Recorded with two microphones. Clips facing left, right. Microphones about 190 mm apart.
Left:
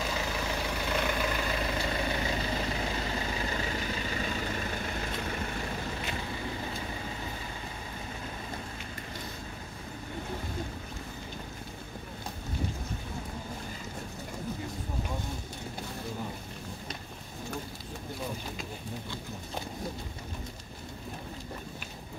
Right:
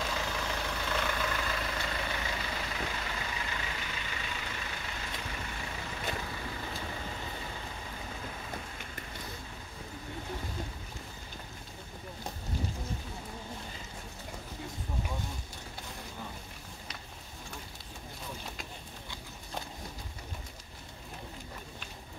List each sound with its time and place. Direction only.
0.0 s vehicle: 10° left (ahead or behind)
1.8 s vehicle: 30° left (ahead or behind)